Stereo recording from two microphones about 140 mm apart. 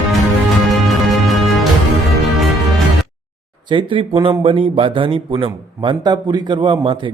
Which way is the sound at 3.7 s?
40° right (ahead or behind).